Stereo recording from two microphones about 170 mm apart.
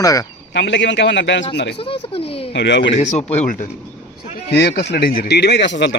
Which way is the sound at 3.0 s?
40° left (ahead or behind).